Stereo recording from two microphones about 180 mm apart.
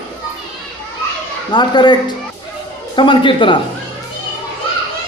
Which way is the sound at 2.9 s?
25° left (ahead or behind).